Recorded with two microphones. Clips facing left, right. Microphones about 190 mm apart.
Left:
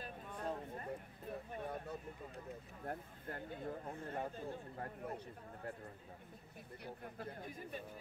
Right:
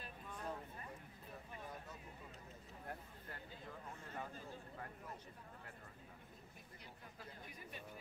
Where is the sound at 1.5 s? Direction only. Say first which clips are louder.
Left 7 dB; 60° left (ahead or behind).